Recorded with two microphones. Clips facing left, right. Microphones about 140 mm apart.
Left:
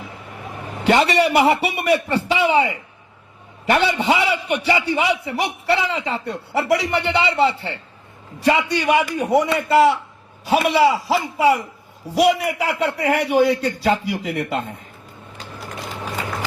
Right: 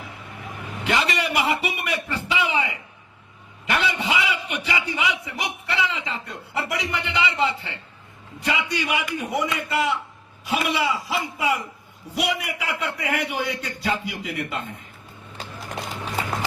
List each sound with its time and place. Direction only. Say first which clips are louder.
0.9 s a man's voice: left 8 dB; 35° left (ahead or behind)